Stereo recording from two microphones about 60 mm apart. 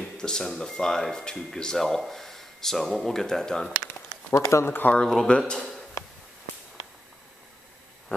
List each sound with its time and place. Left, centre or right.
0.0 s speech: centre
4.3 s speech: left
4.6 s speech: left
4.9 s speech: centre